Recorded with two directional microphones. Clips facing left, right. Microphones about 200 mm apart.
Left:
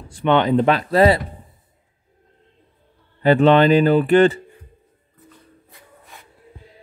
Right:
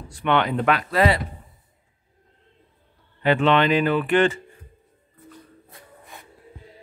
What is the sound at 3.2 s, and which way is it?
Speech, 40° left (ahead or behind).